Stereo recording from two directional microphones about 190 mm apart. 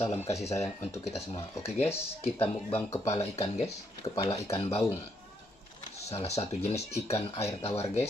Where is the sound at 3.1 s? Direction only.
35° left (ahead or behind).